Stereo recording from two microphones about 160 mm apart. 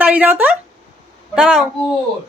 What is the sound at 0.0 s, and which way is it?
Speech, 10° right (ahead or behind).